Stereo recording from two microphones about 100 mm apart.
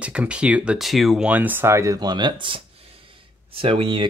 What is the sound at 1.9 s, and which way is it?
Speech, 45° right (ahead or behind).